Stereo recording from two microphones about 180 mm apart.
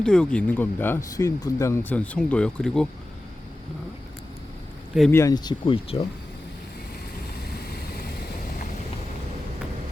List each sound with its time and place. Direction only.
0.0 s speech: 5° left (ahead or behind)
5.1 s speech: 20° left (ahead or behind)